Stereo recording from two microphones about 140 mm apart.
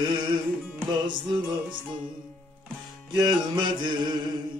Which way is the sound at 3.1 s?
30° right (ahead or behind).